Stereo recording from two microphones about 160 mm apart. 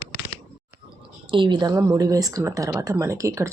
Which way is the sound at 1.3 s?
30° right (ahead or behind).